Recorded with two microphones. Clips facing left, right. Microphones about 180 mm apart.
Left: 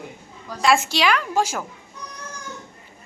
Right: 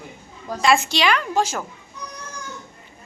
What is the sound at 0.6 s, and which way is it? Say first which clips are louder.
A woman's voice: even; 5° left (ahead or behind).